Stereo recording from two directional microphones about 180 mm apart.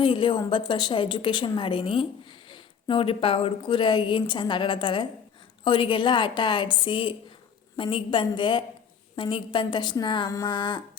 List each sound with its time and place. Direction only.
0.0 s a woman's voice: 30° left (ahead or behind)